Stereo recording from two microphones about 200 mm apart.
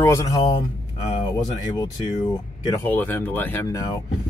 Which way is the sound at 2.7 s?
10° left (ahead or behind).